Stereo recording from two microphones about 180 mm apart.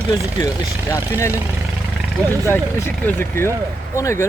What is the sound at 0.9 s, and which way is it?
Speech, 15° left (ahead or behind).